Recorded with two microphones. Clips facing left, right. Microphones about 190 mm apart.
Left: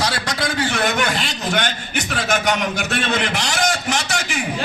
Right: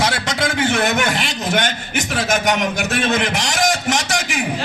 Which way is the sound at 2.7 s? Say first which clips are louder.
Right 3 dB; 45° right (ahead or behind).